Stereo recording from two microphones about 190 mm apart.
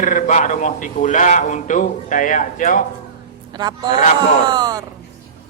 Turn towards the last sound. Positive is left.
turn(degrees=-20)  # may be behind; listen again after turning